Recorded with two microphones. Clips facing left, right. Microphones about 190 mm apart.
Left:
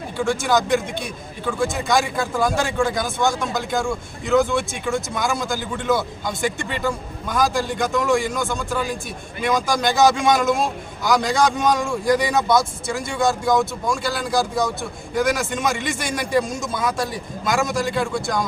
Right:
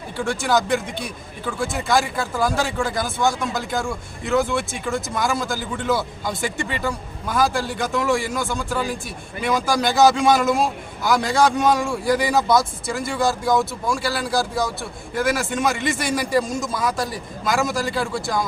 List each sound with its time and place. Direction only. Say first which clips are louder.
0.4 s speech: right 1 dB; centre (ahead or behind)